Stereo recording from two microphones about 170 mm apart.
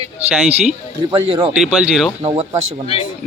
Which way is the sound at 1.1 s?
30° right (ahead or behind).